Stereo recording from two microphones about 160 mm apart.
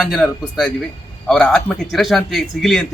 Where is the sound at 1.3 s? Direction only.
5° left (ahead or behind).